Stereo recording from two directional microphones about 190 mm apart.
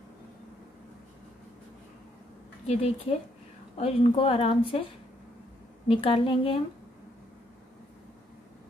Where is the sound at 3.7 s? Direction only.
30° left (ahead or behind).